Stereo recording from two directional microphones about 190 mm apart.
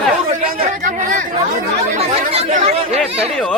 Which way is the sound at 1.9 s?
35° right (ahead or behind).